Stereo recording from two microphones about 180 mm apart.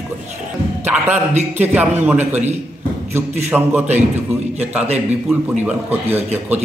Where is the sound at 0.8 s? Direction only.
10° right (ahead or behind).